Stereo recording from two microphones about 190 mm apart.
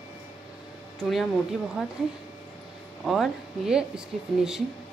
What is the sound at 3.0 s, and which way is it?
Speech, centre (ahead or behind).